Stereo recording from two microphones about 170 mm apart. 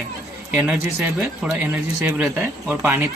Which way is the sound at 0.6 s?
10° right (ahead or behind).